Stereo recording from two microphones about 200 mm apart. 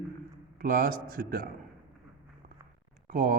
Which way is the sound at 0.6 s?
45° right (ahead or behind).